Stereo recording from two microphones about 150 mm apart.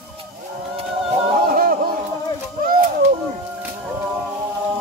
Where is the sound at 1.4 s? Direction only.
70° right (ahead or behind).